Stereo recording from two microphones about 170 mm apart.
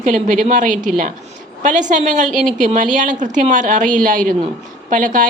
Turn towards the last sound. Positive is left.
turn(degrees=-50)  # may be behind; listen again after turning